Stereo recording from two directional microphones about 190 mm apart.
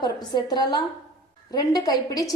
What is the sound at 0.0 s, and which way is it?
A woman's voice, 20° left (ahead or behind).